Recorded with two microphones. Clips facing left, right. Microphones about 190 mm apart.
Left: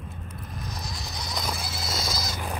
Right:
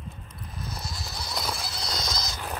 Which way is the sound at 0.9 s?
Centre (ahead or behind).